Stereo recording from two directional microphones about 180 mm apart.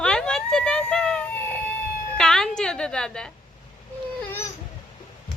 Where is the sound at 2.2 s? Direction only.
5° left (ahead or behind).